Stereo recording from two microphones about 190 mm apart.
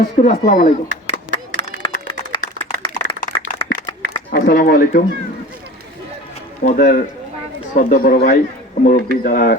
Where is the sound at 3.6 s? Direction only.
25° left (ahead or behind).